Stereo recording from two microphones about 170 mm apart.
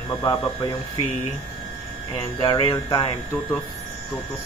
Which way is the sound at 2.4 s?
25° left (ahead or behind).